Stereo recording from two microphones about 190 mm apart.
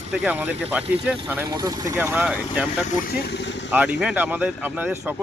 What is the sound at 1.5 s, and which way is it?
Speech, 20° right (ahead or behind).